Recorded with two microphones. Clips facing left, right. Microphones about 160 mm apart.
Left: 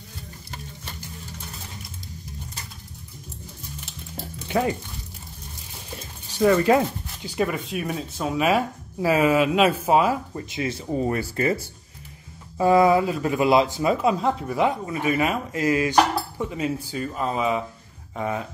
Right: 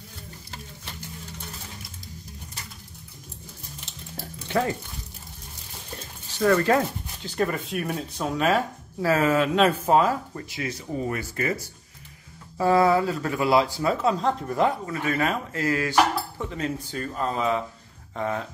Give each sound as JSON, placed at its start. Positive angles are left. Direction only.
{"t": 4.1, "sound": "frying", "side_deg": 15}
{"t": 5.9, "sound": "speech", "side_deg": 10}
{"t": 10.5, "sound": "speech", "side_deg": 25}
{"t": 12.5, "sound": "speech", "side_deg": 15}